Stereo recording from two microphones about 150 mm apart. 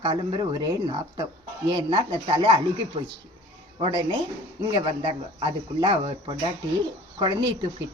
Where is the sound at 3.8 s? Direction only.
35° right (ahead or behind).